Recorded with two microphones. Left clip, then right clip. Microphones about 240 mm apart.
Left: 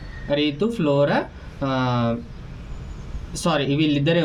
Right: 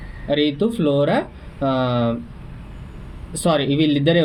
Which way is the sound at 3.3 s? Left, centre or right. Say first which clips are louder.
Right 3 dB; centre.